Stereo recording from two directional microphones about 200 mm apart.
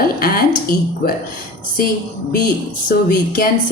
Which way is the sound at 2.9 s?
45° left (ahead or behind).